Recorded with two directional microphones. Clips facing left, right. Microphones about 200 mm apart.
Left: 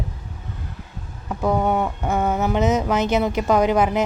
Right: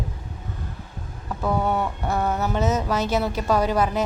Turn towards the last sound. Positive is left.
turn(degrees=20)  # may be behind; listen again after turning